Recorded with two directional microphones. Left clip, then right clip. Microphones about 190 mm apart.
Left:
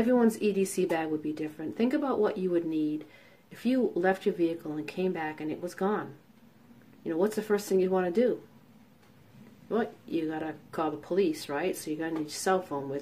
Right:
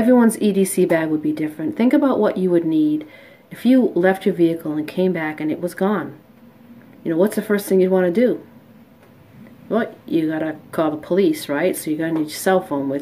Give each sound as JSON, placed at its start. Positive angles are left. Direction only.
{"t": 0.0, "sound": "speech", "side_deg": -20}
{"t": 7.1, "sound": "speech", "side_deg": -15}
{"t": 9.7, "sound": "speech", "side_deg": -15}